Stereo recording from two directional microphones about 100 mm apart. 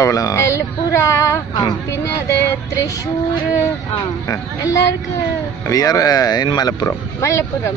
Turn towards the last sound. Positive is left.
turn(degrees=30)  # may be behind; listen again after turning